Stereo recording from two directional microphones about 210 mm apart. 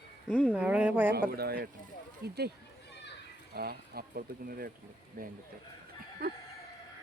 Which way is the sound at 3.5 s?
45° right (ahead or behind).